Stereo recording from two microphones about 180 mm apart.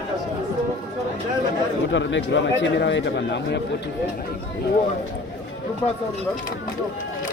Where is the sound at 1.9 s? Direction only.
90° left.